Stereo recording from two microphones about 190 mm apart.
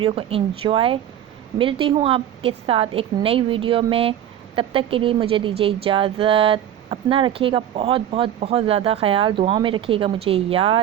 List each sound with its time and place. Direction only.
0.0 s a woman's voice: 30° right (ahead or behind)